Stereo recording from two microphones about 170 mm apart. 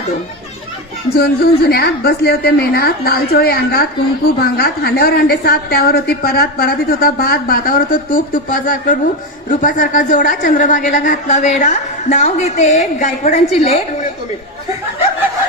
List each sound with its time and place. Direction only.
1.1 s a woman's voice: 65° left (ahead or behind); by 13.8 s 40° left (ahead or behind)